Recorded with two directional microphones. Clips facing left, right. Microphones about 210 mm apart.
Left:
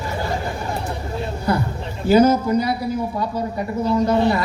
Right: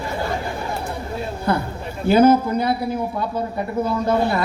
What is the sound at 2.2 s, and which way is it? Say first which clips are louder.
Speech: right 2 dB; 55° right (ahead or behind).